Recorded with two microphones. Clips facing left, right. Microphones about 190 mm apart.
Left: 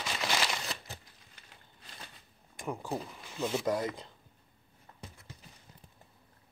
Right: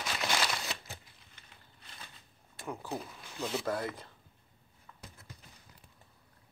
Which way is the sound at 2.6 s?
15° left (ahead or behind).